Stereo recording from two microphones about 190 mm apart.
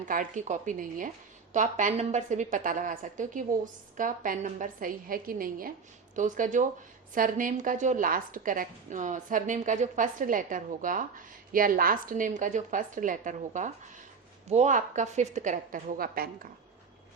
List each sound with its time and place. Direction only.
0.0 s a woman's voice: 45° right (ahead or behind)